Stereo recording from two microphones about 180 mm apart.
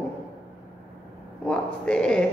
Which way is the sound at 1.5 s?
5° left (ahead or behind).